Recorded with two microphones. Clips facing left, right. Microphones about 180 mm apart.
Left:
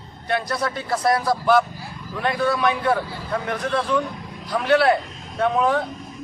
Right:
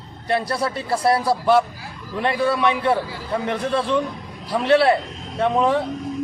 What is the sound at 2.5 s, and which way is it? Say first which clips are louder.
A man's voice: right 1 dB; 25° right (ahead or behind).